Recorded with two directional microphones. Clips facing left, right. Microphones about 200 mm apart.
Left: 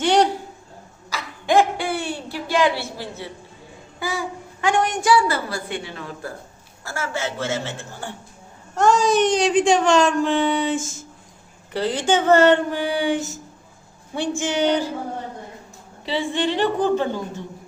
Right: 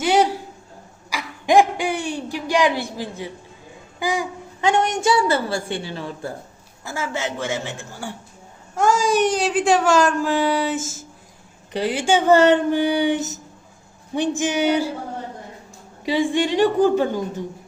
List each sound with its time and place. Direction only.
0.0 s a sound: 5° right (ahead or behind)
4.0 s a woman's voice: 15° right (ahead or behind)
6.8 s speech: 15° right (ahead or behind)
11.7 s speech: 15° right (ahead or behind)
16.0 s speech: 15° right (ahead or behind)